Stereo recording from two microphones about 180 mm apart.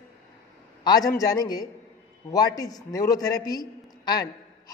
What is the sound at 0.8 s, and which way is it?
A man's voice, 20° left (ahead or behind).